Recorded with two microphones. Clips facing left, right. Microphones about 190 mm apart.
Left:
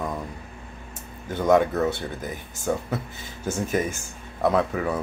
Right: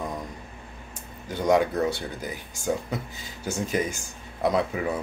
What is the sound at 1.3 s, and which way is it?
Speech, 10° right (ahead or behind).